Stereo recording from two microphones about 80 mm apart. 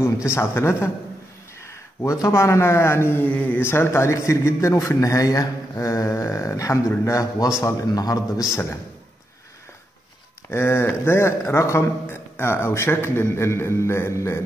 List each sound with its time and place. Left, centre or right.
0.3 s a man's voice: left
3.3 s mantra: centre
3.6 s a man's voice: left
10.5 s a man's voice: left